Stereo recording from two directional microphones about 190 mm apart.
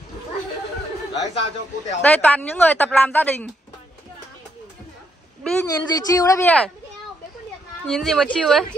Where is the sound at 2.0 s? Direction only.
5° left (ahead or behind).